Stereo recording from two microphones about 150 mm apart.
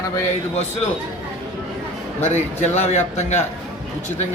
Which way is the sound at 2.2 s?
50° left (ahead or behind).